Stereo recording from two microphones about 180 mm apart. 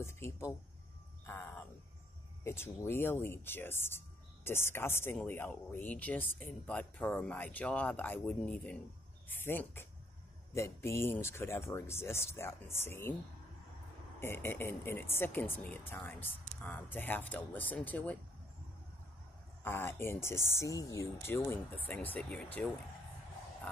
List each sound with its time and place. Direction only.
0.0 s speech: 15° left (ahead or behind)
1.2 s a sound: 10° left (ahead or behind)
2.4 s speech: 15° left (ahead or behind)
14.2 s speech: 15° left (ahead or behind)
19.6 s speech: 15° left (ahead or behind)